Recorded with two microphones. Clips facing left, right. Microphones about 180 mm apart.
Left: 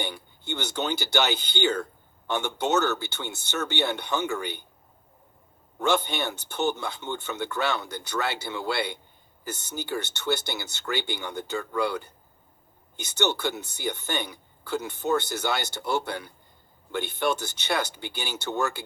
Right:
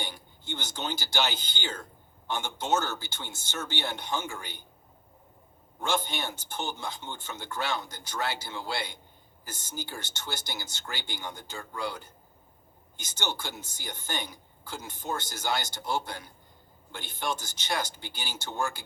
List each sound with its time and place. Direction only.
0.0 s speech: 65° left (ahead or behind)
5.8 s speech: 65° left (ahead or behind)